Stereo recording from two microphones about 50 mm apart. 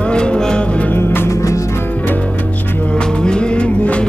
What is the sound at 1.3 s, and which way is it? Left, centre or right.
Music, left.